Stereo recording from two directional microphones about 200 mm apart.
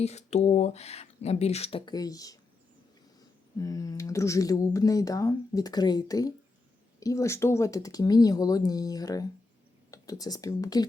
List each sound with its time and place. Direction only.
0.0 s speech: 35° left (ahead or behind); by 10.8 s 20° left (ahead or behind)